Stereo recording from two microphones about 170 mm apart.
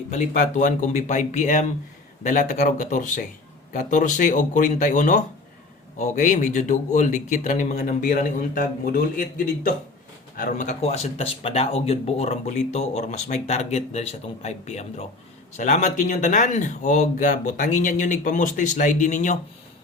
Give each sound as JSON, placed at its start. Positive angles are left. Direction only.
{"t": 0.1, "sound": "speech", "side_deg": 45}
{"t": 10.3, "sound": "speech", "side_deg": 50}